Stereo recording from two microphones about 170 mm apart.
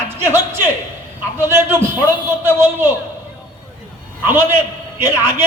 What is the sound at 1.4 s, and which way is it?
A man's voice, 15° right (ahead or behind).